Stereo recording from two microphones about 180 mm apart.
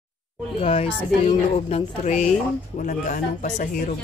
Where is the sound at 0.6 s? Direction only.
35° left (ahead or behind).